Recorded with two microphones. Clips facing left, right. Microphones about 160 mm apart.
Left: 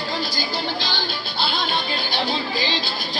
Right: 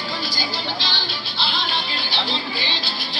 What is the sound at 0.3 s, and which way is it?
Music, 50° left (ahead or behind).